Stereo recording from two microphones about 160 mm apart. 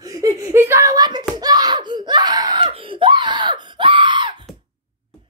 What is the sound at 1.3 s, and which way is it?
Screaming, 25° right (ahead or behind).